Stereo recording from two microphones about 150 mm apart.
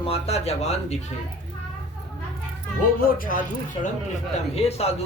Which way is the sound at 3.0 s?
75° left (ahead or behind).